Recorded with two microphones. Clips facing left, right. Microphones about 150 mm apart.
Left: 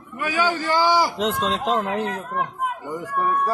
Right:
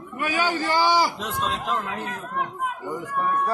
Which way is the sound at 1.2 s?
85° left.